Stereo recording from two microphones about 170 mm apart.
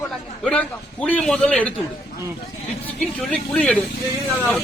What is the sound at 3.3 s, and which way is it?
Speech, 5° left (ahead or behind).